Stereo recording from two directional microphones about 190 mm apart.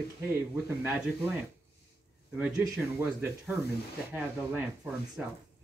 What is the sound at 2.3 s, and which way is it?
Speech, 5° right (ahead or behind).